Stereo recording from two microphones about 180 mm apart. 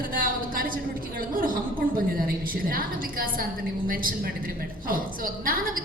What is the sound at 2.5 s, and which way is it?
A woman's voice, 55° right (ahead or behind).